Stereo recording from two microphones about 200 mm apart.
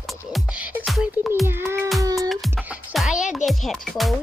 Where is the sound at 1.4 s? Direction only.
10° right (ahead or behind).